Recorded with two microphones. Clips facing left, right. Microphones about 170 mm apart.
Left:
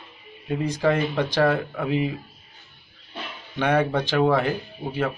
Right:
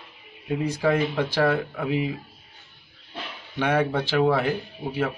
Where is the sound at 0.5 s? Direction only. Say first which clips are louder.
Left 1 dB; 10° right (ahead or behind).